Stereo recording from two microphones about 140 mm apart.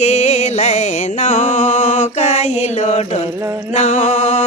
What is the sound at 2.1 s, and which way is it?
Mantra, 55° left (ahead or behind).